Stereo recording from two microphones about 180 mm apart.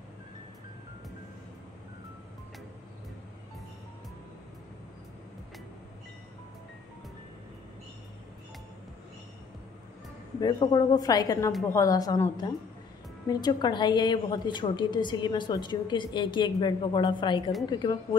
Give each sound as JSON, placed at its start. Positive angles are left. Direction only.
{"t": 10.4, "sound": "a woman's voice", "side_deg": 25}